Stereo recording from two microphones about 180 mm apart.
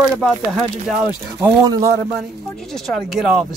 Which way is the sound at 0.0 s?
Centre (ahead or behind).